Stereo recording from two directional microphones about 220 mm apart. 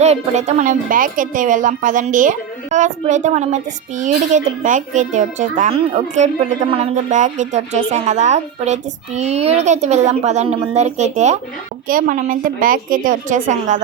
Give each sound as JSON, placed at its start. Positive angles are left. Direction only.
{"t": 0.0, "sound": "a woman's voice", "side_deg": -30}